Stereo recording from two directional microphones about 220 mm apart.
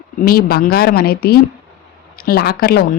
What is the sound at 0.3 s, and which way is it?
Speech, 45° left (ahead or behind).